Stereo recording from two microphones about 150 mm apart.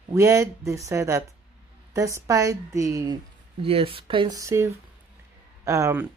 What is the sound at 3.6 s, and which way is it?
Speech, 40° right (ahead or behind).